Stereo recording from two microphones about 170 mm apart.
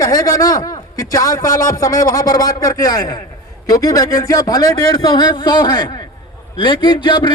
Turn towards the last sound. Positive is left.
turn(degrees=25)  # may be behind; listen again after turning